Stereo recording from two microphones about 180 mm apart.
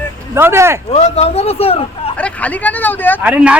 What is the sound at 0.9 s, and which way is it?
Speech, 35° left (ahead or behind).